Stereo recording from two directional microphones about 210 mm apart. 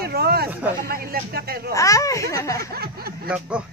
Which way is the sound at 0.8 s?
45° right (ahead or behind).